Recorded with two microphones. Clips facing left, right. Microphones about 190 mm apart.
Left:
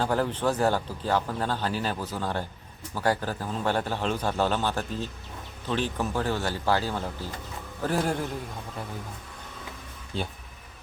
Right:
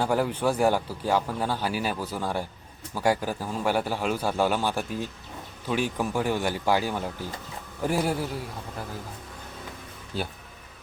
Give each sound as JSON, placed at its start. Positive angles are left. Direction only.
{"t": 0.0, "sound": "a man's voice", "side_deg": -10}
{"t": 10.1, "sound": "speech", "side_deg": -5}